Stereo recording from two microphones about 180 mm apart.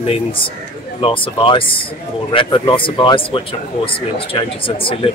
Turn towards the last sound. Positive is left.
turn(degrees=30)  # may be behind; listen again after turning